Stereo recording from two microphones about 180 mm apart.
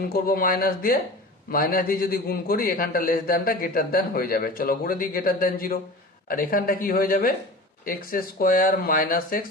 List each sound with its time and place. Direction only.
0.1 s a man's voice: 55° left (ahead or behind)